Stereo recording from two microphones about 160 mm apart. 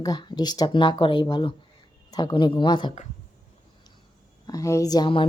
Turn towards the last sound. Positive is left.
turn(degrees=30)  # may be behind; listen again after turning